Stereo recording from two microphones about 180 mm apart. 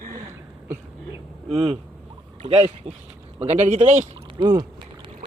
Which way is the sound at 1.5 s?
35° right (ahead or behind).